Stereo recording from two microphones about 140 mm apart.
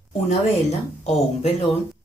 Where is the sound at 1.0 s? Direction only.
50° left (ahead or behind).